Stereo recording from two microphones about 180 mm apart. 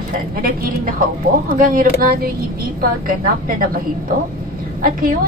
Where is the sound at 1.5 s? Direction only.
50° right (ahead or behind).